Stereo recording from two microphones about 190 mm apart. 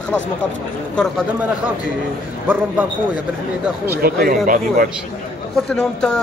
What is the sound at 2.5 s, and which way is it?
Speech, 10° right (ahead or behind).